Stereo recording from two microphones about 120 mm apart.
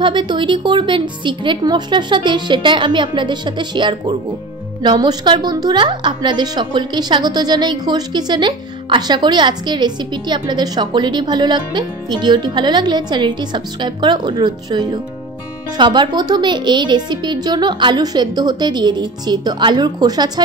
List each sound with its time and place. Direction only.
0.0 s a woman's voice: 40° right (ahead or behind)